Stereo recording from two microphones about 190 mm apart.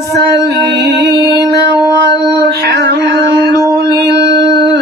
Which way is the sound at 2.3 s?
60° right (ahead or behind).